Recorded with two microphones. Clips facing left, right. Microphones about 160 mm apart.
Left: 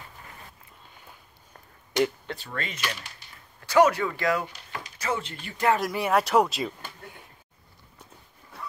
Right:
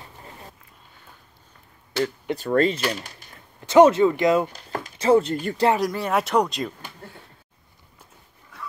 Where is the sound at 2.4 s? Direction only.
45° right (ahead or behind).